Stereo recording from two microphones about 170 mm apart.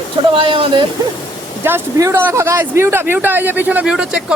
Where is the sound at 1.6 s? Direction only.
15° right (ahead or behind).